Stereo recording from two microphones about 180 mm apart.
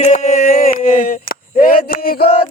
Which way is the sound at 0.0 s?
40° left (ahead or behind).